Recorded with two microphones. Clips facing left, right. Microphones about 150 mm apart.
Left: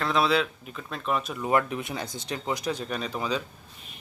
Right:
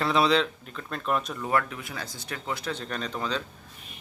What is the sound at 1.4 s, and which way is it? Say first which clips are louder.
Speech: left 2 dB; 20° left (ahead or behind).